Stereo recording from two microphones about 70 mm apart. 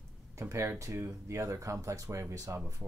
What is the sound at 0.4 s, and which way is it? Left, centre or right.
Speech, right.